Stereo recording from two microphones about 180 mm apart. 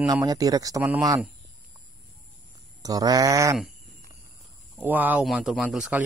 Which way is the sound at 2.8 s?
20° right (ahead or behind).